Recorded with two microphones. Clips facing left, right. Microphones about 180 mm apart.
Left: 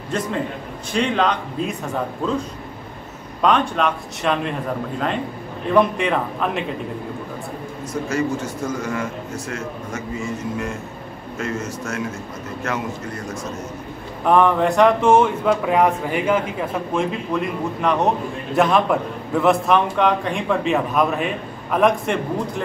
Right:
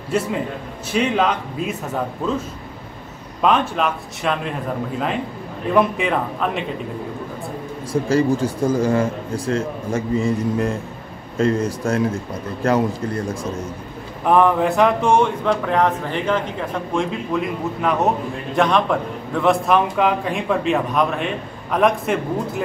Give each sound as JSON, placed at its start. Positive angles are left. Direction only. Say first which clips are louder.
{"t": 0.1, "sound": "a man's voice", "louder": "right 2 dB", "side_deg": -10}
{"t": 3.4, "sound": "a man's voice", "louder": "even", "side_deg": -5}
{"t": 7.9, "sound": "speech", "louder": "right 5 dB", "side_deg": -30}
{"t": 14.2, "sound": "a man's voice", "louder": "even", "side_deg": 0}